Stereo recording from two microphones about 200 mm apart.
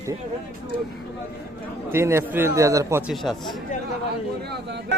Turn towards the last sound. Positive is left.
turn(degrees=-60)  # may be behind; listen again after turning